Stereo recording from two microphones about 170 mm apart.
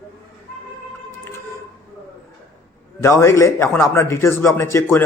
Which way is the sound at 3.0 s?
15° left (ahead or behind).